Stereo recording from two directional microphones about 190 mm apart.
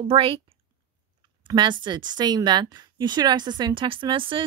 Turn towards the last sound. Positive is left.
turn(degrees=-25)  # may be behind; listen again after turning